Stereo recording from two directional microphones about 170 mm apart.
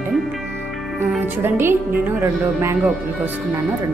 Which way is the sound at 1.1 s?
10° right (ahead or behind).